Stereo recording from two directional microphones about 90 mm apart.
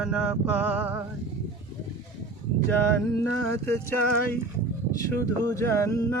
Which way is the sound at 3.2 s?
25° left (ahead or behind).